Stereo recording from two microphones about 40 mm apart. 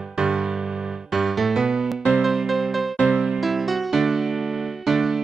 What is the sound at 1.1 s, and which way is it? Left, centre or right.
Music, centre.